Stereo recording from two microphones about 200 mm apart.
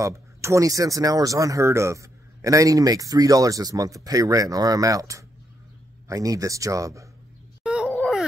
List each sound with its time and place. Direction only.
0.0 s speech: 15° right (ahead or behind)
7.6 s groan: 5° right (ahead or behind)
7.9 s a sound: centre (ahead or behind)